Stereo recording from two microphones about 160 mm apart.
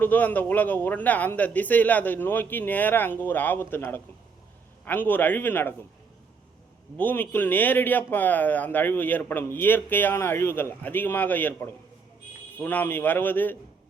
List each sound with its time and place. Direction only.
0.0 s speech: 10° left (ahead or behind)
6.9 s speech: 10° left (ahead or behind)